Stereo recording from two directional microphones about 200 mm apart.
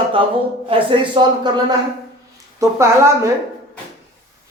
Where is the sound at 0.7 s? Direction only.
25° right (ahead or behind).